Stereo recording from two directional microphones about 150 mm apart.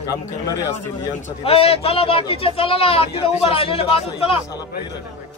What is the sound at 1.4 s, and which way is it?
A man's voice, 40° left (ahead or behind).